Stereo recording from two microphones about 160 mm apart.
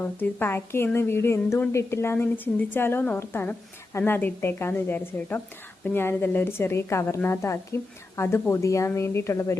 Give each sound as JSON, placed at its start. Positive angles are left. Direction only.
{"t": 0.0, "sound": "a woman's voice", "side_deg": 15}